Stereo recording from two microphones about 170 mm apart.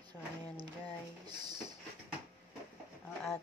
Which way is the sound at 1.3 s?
25° right (ahead or behind).